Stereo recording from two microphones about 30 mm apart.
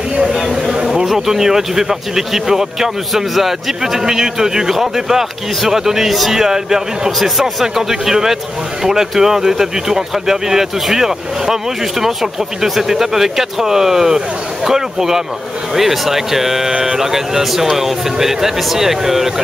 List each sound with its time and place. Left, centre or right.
0.5 s a sound: centre
0.8 s speech: centre
6.0 s speech: centre
6.3 s speech: centre
7.1 s speech: centre
7.6 s speech: centre